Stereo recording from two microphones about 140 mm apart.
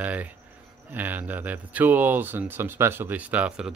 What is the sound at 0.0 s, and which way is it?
Speech, 10° right (ahead or behind).